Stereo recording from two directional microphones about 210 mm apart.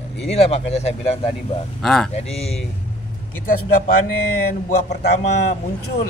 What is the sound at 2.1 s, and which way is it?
Speech, 30° left (ahead or behind).